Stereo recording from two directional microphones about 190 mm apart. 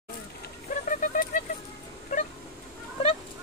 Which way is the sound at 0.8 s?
45° left (ahead or behind).